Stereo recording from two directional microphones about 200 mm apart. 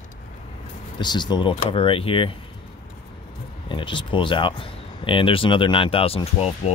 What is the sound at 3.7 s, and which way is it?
Speech, 25° left (ahead or behind).